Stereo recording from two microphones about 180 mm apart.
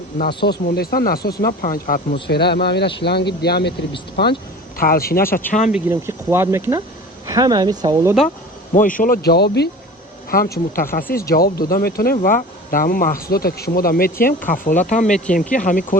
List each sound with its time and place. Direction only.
0.2 s speech: 65° left (ahead or behind)
2.2 s speech: 65° left (ahead or behind)
4.8 s speech: 55° left (ahead or behind)
5.5 s speech: 40° left (ahead or behind)
5.9 s speech: 15° right (ahead or behind)
8.7 s speech: 45° left (ahead or behind)